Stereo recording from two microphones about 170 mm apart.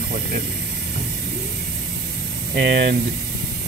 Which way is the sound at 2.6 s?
85° right.